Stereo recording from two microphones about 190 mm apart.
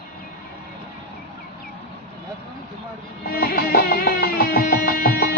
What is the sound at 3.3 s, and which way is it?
Music, 50° left (ahead or behind).